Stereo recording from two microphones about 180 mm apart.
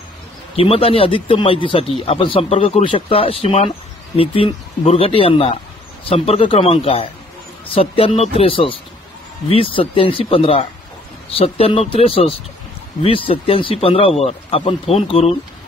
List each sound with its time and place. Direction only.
0.6 s speech: 30° left (ahead or behind)